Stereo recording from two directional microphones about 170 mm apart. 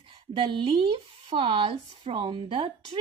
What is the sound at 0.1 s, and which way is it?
Speech, 25° right (ahead or behind).